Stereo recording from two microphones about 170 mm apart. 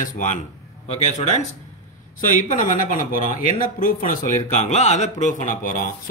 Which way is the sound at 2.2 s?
50° left (ahead or behind).